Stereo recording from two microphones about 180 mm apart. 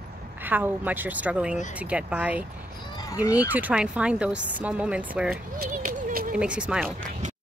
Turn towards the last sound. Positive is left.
turn(degrees=-5)  # may be behind; listen again after turning